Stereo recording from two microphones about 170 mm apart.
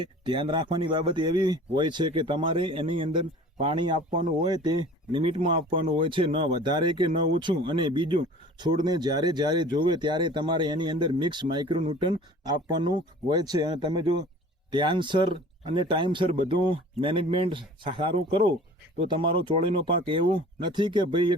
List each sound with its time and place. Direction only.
0.0 s speech: 25° right (ahead or behind)